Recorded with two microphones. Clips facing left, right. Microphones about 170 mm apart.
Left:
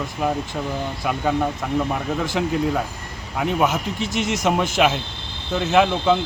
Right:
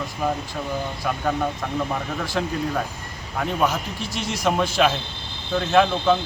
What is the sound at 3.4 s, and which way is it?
A man's voice, 15° left (ahead or behind).